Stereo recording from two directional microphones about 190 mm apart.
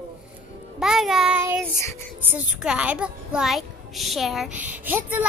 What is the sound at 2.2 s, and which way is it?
A child's voice, 10° right (ahead or behind).